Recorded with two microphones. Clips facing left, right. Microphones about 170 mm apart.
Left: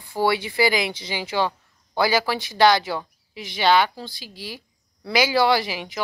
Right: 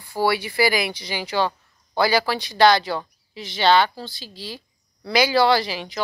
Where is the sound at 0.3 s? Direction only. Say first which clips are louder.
Even; 20° left (ahead or behind).